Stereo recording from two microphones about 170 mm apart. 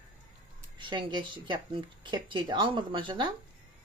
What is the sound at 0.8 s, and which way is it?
Speech, 30° right (ahead or behind).